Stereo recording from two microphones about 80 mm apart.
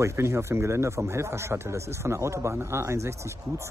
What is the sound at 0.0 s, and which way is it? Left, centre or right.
Speech, right.